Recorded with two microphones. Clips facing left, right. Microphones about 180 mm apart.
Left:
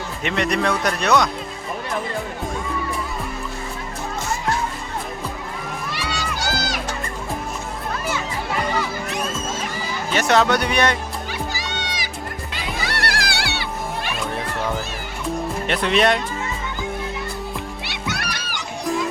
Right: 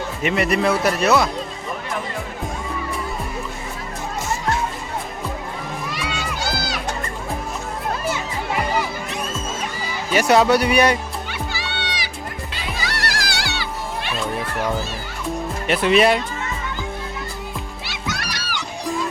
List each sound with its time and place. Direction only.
0.2 s speech: 5° right (ahead or behind)
6.1 s music: 45° left (ahead or behind)
10.1 s speech: 10° right (ahead or behind)
11.3 s music: 40° left (ahead or behind)
12.8 s music: 60° left (ahead or behind)
15.6 s speech: 5° right (ahead or behind)
17.9 s music: 60° left (ahead or behind)